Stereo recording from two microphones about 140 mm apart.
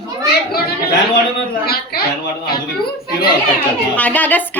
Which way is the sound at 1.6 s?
90° left.